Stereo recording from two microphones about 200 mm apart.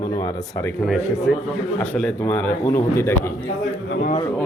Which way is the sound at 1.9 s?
5° left (ahead or behind).